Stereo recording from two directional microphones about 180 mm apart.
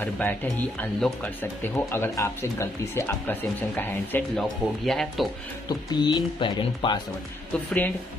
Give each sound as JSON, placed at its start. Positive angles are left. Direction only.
{"t": 0.0, "sound": "speech", "side_deg": 10}
{"t": 5.7, "sound": "speech", "side_deg": 25}